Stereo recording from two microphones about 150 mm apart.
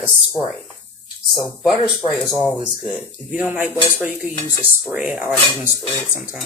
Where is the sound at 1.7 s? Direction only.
30° left (ahead or behind).